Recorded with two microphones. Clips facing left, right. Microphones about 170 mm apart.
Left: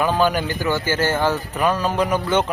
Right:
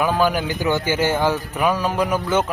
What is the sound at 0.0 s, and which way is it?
A man's voice, 10° right (ahead or behind).